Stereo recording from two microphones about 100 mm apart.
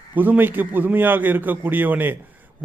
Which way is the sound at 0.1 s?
20° right (ahead or behind).